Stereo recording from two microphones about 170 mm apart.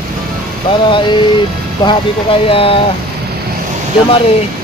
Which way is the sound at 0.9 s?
30° left (ahead or behind).